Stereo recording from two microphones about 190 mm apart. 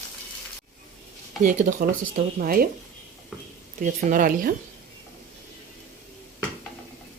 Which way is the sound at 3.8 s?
45° right (ahead or behind).